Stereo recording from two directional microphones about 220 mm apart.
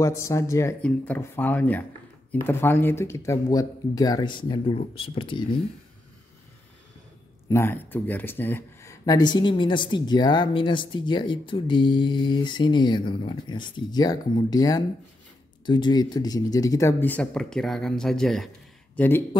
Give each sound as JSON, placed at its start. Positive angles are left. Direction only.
{"t": 0.0, "sound": "speech", "side_deg": 15}
{"t": 7.4, "sound": "speech", "side_deg": 10}